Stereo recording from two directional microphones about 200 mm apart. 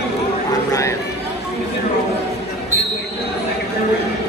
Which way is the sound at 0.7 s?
15° left (ahead or behind).